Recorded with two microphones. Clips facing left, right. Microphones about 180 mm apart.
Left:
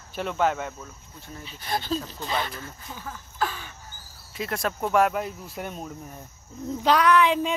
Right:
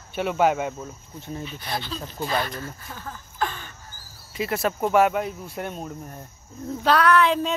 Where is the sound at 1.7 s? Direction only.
45° left (ahead or behind).